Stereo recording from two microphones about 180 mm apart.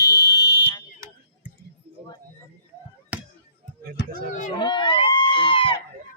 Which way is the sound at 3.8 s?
55° right (ahead or behind).